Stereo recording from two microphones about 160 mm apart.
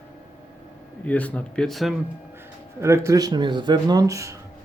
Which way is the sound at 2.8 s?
20° right (ahead or behind).